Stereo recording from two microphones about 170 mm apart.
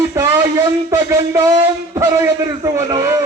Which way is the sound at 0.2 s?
20° right (ahead or behind).